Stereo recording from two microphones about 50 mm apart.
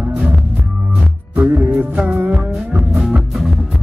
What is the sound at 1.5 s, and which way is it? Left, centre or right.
Music, right.